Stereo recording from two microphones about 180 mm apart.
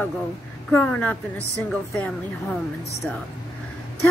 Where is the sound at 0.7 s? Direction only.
10° left (ahead or behind).